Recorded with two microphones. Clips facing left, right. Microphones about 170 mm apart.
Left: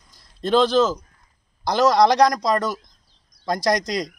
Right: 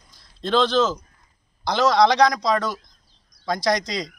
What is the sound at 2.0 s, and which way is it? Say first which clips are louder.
Speech: right 1 dB; 10° left (ahead or behind).